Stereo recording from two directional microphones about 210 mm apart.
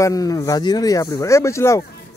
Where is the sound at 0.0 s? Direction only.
15° left (ahead or behind).